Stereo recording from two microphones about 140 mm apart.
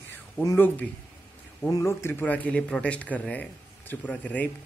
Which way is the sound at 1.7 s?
20° left (ahead or behind).